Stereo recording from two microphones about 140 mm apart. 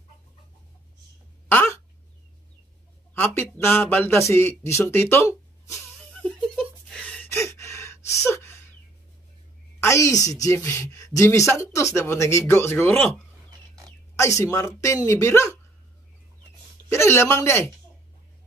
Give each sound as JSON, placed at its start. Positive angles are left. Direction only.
{"t": 1.5, "sound": "a sound", "side_deg": 15}
{"t": 3.2, "sound": "speech", "side_deg": 15}
{"t": 6.2, "sound": "gasp", "side_deg": 0}
{"t": 8.3, "sound": "a sound", "side_deg": 20}
{"t": 9.8, "sound": "a woman's voice", "side_deg": 20}
{"t": 14.1, "sound": "a woman's voice", "side_deg": 20}
{"t": 16.9, "sound": "a man's voice", "side_deg": 20}